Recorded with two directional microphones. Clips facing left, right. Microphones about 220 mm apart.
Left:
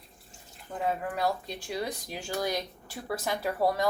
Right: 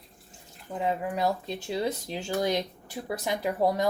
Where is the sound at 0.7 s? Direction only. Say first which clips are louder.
Right 2 dB; 15° right (ahead or behind).